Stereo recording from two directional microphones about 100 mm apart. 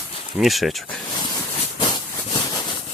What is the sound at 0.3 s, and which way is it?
Speech, centre (ahead or behind).